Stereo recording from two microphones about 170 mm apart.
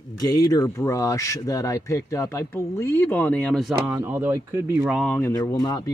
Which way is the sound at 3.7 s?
10° right (ahead or behind).